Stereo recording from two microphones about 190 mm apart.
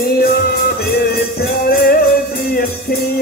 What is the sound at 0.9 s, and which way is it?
Music, 55° left (ahead or behind).